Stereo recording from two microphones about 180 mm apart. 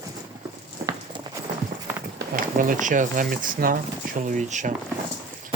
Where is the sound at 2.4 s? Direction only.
50° right (ahead or behind).